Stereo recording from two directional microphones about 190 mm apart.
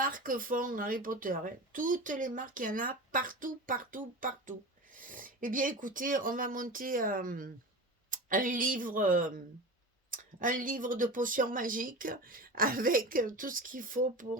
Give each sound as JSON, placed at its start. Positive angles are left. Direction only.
{"t": 0.0, "sound": "a woman's voice", "side_deg": -45}